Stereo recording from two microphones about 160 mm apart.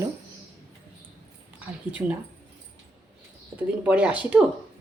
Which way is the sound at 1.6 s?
10° right (ahead or behind).